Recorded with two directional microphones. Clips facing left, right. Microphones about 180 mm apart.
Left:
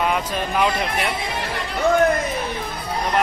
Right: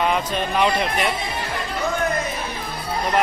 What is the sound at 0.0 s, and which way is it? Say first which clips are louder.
Speech: right 1 dB; 5° left (ahead or behind).